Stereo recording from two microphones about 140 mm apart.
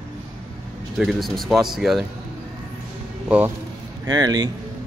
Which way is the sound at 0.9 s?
Centre (ahead or behind).